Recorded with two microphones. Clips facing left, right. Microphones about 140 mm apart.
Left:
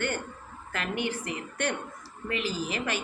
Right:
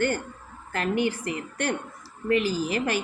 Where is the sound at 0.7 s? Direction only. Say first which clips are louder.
Right 6 dB; 40° right (ahead or behind).